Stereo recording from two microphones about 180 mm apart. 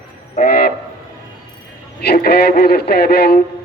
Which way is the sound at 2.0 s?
60° left (ahead or behind).